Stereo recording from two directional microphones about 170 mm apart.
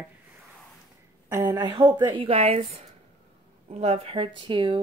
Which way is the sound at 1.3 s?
15° right (ahead or behind).